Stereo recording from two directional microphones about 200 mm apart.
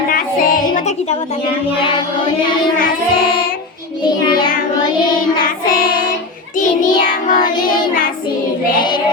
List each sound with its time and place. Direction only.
0.1 s music: 45° left (ahead or behind)
2.7 s child singing: 45° left (ahead or behind)
5.4 s child singing: 45° left (ahead or behind)
7.1 s child singing: 20° left (ahead or behind)